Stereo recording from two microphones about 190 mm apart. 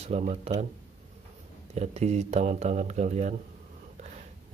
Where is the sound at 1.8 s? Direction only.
35° right (ahead or behind).